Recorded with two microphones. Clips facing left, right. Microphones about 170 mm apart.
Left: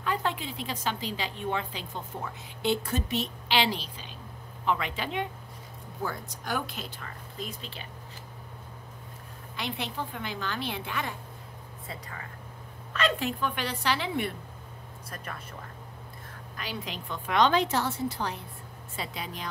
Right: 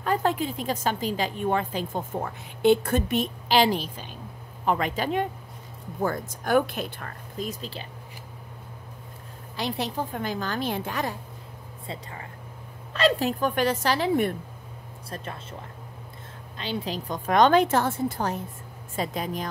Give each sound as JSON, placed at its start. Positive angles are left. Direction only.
{"t": 0.0, "sound": "a woman's voice", "side_deg": -45}
{"t": 9.6, "sound": "a woman's voice", "side_deg": -40}
{"t": 11.9, "sound": "a woman's voice", "side_deg": -25}
{"t": 15.0, "sound": "speech", "side_deg": -25}
{"t": 16.5, "sound": "a woman's voice", "side_deg": -30}